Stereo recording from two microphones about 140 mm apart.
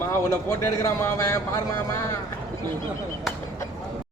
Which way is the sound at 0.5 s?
20° left (ahead or behind).